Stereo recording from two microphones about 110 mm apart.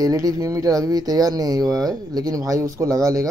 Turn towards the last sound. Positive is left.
turn(degrees=-35)  # may be behind; listen again after turning